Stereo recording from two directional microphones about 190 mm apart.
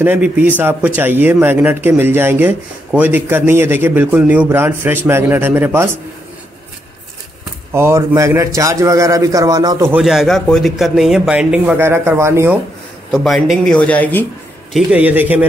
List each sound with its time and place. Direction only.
0.0 s speech: 10° right (ahead or behind)
7.7 s speech: 15° right (ahead or behind)
10.0 s speech: centre (ahead or behind)
13.1 s speech: centre (ahead or behind)
14.7 s speech: 5° right (ahead or behind)